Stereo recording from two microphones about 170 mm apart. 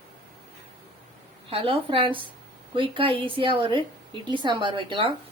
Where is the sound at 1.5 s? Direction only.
35° right (ahead or behind).